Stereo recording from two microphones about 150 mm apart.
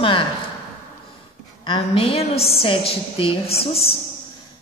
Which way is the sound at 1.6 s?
35° left (ahead or behind).